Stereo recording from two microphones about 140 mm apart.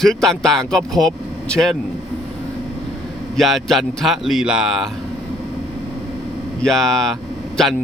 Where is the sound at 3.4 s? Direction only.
Centre (ahead or behind).